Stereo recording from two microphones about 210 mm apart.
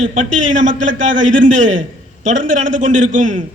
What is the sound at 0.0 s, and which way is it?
A man's voice, 35° right (ahead or behind).